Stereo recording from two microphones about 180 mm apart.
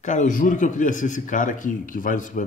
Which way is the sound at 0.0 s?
45° left (ahead or behind).